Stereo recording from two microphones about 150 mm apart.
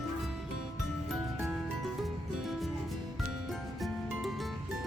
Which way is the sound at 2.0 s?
Centre (ahead or behind).